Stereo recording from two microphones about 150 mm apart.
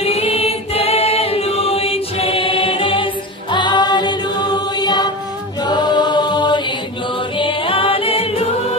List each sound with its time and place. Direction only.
0.0 s choir: 45° left (ahead or behind); by 5.1 s 25° left (ahead or behind)
5.6 s chant: 30° left (ahead or behind)
7.3 s music: 35° left (ahead or behind)